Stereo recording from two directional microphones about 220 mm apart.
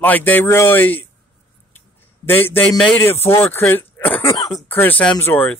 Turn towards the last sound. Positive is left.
turn(degrees=10)  # may be behind; listen again after turning